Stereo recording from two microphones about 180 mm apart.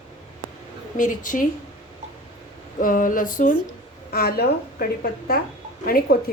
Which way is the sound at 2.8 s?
50° left (ahead or behind).